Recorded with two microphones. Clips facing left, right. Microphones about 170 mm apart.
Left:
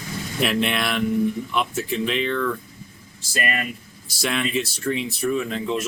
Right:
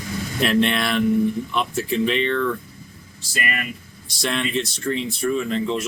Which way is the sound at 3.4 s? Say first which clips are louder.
Left 2 dB; 40° left (ahead or behind).